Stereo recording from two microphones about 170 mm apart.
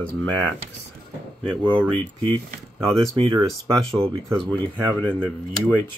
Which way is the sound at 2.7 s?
25° right (ahead or behind).